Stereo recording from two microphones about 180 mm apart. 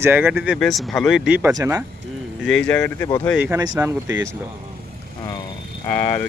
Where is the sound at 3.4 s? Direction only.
15° right (ahead or behind).